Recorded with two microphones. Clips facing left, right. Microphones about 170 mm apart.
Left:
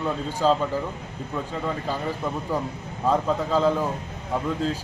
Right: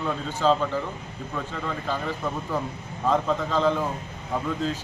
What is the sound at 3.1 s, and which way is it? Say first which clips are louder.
Speech: left 1 dB; 10° left (ahead or behind).